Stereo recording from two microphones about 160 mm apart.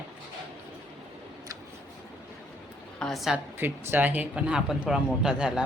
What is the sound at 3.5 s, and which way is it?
A man's voice, 15° right (ahead or behind).